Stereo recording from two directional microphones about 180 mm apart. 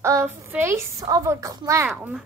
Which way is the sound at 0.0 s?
15° right (ahead or behind).